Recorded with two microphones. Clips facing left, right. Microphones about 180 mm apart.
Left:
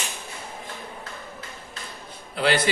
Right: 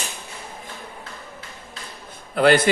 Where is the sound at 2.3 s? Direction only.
50° right (ahead or behind).